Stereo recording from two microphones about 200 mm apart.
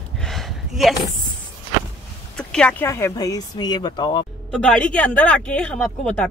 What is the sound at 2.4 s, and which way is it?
Speech, 5° left (ahead or behind).